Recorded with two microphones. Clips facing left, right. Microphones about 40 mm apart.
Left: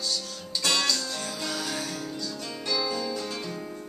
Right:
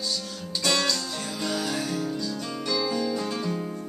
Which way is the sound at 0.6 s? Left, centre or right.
Centre.